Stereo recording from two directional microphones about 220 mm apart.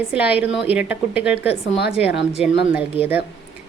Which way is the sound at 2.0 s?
50° left (ahead or behind).